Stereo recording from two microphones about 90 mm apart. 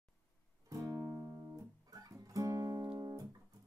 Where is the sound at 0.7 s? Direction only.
40° right (ahead or behind).